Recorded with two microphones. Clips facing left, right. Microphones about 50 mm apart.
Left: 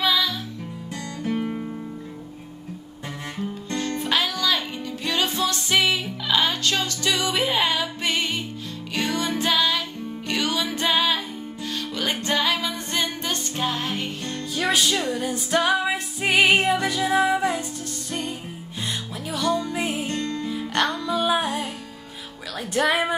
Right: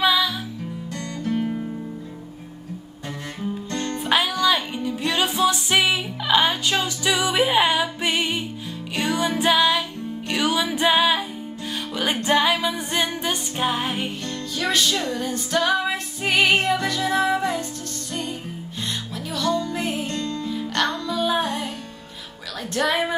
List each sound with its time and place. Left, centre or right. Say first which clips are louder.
0.0 s music: right 3 dB; centre
1.2 s music: right 2 dB; centre
4.0 s music: right 5 dB; centre
14.2 s music: left 1 dB; centre
19.3 s music: even; centre
20.1 s music: even; left; by 21.6 s centre
22.8 s speech: left 1 dB; centre